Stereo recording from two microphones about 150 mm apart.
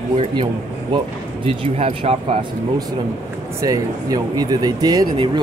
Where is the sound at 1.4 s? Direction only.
45° right (ahead or behind).